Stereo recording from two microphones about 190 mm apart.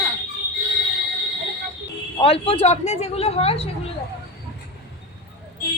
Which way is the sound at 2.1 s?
30° left (ahead or behind).